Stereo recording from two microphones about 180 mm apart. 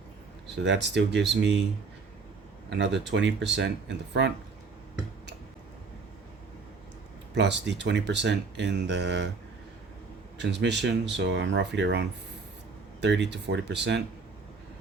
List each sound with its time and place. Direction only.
0.6 s speech: 80° right
2.6 s speech: 75° right (ahead or behind)
7.3 s speech: 75° right (ahead or behind)
10.3 s speech: 75° right (ahead or behind)